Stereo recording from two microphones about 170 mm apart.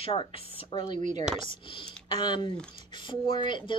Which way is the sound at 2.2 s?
25° left (ahead or behind).